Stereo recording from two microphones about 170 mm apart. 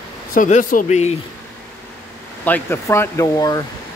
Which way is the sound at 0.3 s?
50° left (ahead or behind).